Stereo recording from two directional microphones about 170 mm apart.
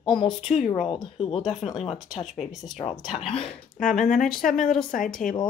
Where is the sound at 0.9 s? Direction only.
30° left (ahead or behind).